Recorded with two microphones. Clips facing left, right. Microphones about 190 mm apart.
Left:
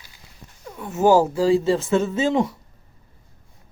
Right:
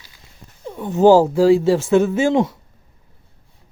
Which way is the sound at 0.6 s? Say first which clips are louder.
Right 7 dB; 30° right (ahead or behind).